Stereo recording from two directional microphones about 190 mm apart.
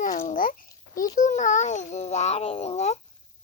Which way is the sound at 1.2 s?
40° left (ahead or behind).